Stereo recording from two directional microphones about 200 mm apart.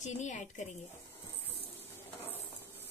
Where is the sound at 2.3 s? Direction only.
10° left (ahead or behind).